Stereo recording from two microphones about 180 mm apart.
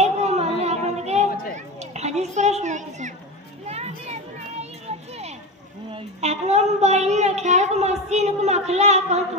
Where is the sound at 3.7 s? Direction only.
35° right (ahead or behind).